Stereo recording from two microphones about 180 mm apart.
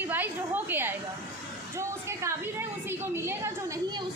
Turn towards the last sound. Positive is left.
turn(degrees=-15)  # may be behind; listen again after turning